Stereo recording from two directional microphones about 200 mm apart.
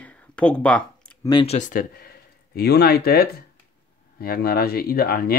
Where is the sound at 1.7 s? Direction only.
45° left (ahead or behind).